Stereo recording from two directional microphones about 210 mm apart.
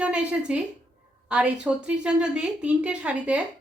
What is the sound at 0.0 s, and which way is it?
A woman's voice, 5° right (ahead or behind).